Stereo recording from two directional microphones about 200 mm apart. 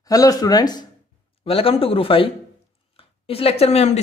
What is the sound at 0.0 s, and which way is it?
Speech, 20° left (ahead or behind).